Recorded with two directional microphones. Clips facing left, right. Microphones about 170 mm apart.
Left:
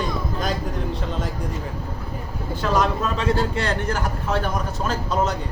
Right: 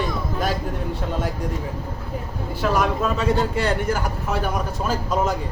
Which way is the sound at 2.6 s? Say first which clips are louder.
Right 1 dB; 10° right (ahead or behind).